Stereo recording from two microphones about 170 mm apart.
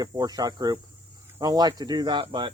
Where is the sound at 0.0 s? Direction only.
20° right (ahead or behind).